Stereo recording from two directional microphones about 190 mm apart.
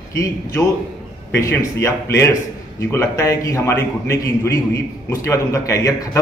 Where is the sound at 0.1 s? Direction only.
15° left (ahead or behind).